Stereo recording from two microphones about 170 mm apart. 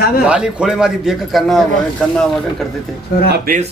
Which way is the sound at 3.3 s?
55° right (ahead or behind).